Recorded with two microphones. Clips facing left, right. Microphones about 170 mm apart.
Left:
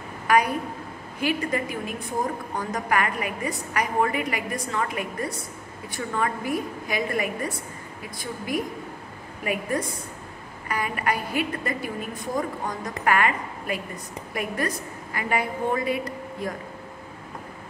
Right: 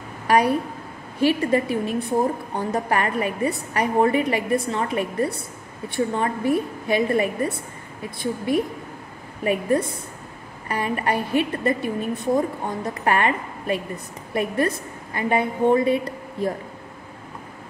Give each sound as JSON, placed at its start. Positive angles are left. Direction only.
{"t": 0.3, "sound": "a woman's voice", "side_deg": -30}